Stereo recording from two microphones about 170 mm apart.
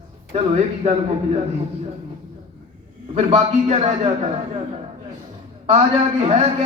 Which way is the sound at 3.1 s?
40° right (ahead or behind).